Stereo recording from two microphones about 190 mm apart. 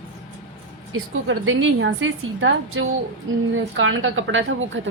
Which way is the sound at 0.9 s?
90° right.